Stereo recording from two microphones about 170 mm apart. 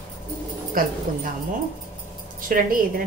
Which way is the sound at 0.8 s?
60° right (ahead or behind).